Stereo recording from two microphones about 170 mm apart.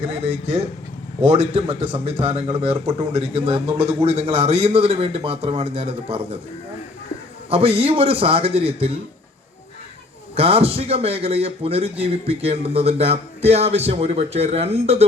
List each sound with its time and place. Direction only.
0.0 s a man's voice: 35° right (ahead or behind)
7.5 s a man's voice: 35° right (ahead or behind)
10.3 s a man's voice: 35° right (ahead or behind)